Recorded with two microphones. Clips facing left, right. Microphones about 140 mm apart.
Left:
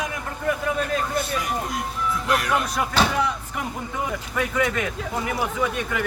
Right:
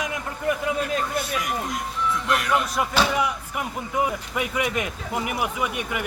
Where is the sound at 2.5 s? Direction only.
Centre (ahead or behind).